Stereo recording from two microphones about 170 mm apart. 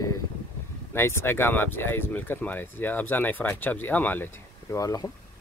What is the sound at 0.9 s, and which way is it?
Speech, 15° left (ahead or behind).